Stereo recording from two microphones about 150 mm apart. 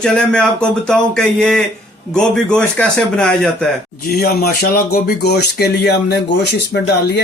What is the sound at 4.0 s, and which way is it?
Speech, 90° left.